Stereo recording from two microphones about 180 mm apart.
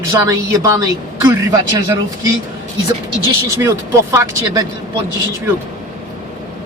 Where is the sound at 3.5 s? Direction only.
15° right (ahead or behind).